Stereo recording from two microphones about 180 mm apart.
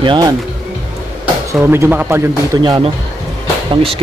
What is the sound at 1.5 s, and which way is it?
Speech, 15° right (ahead or behind).